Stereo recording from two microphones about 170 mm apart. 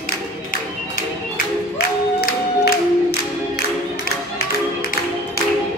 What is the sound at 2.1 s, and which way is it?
Music, 70° left (ahead or behind).